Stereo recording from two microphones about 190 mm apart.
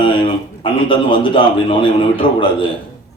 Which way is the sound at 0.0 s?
25° left (ahead or behind).